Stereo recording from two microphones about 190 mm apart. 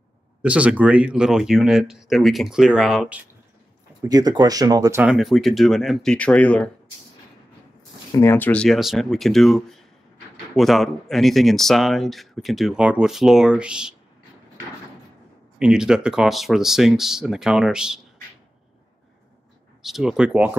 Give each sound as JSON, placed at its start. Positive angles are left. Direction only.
{"t": 0.4, "sound": "speech", "side_deg": -5}
{"t": 4.1, "sound": "speech", "side_deg": -20}
{"t": 5.0, "sound": "speech", "side_deg": 0}
{"t": 8.1, "sound": "speech", "side_deg": 10}
{"t": 15.6, "sound": "speech", "side_deg": -5}
{"t": 19.8, "sound": "speech", "side_deg": 0}